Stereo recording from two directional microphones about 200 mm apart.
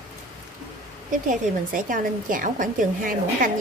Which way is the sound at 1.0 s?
40° right (ahead or behind).